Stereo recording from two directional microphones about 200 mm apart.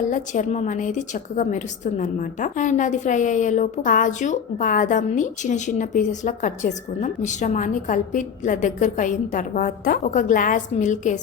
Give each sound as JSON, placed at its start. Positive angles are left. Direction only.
{"t": 0.1, "sound": "a woman's voice", "side_deg": 40}